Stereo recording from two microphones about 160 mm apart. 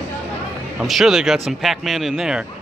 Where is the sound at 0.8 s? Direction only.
Centre (ahead or behind).